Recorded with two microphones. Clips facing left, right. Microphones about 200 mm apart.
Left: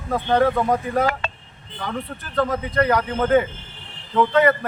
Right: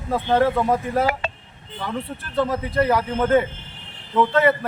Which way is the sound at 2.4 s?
5° right (ahead or behind).